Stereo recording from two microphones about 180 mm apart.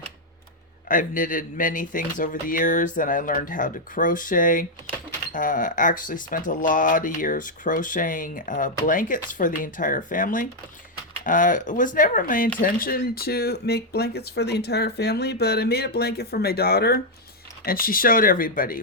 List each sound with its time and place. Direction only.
0.9 s speech: 50° left (ahead or behind)